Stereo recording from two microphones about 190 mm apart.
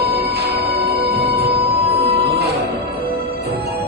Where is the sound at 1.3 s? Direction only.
30° right (ahead or behind).